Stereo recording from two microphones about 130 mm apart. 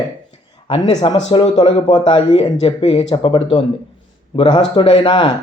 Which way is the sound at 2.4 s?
50° left (ahead or behind).